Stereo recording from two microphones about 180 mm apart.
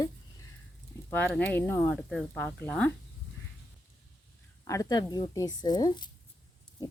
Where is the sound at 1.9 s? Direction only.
5° left (ahead or behind).